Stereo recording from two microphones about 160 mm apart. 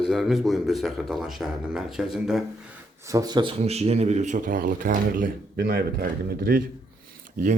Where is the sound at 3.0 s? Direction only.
20° right (ahead or behind).